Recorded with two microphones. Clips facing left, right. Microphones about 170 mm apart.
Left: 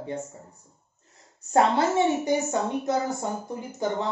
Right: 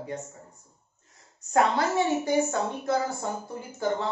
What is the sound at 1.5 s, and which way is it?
A woman's voice, 25° left (ahead or behind).